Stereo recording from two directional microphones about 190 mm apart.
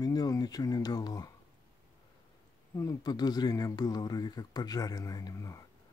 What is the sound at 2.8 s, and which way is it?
Speech, 20° left (ahead or behind).